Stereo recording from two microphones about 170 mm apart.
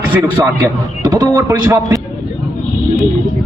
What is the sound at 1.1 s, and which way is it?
Speech, 20° right (ahead or behind).